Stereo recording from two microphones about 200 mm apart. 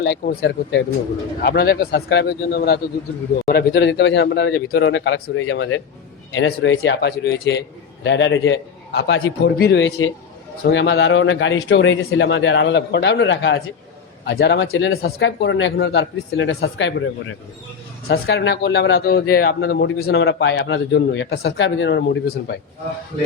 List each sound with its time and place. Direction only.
0.0 s a man's voice: 55° left (ahead or behind)
9.1 s speech: 75° left (ahead or behind)
9.6 s speech: 60° left (ahead or behind)
18.1 s speech: 55° left (ahead or behind)